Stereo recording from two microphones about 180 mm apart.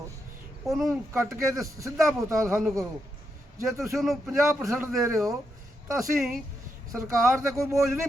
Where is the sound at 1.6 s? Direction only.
15° right (ahead or behind).